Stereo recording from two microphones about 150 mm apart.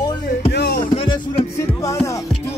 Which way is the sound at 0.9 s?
35° left (ahead or behind).